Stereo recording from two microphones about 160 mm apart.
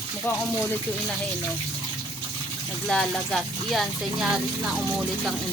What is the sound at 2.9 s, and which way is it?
Speech, centre (ahead or behind).